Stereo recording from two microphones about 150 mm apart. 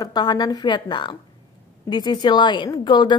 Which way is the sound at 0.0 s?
30° left (ahead or behind).